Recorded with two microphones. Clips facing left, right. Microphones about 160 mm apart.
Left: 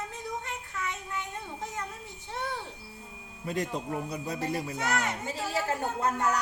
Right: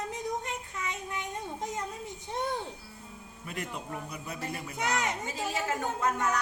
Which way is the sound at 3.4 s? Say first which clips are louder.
Left 7 dB; 35° left (ahead or behind).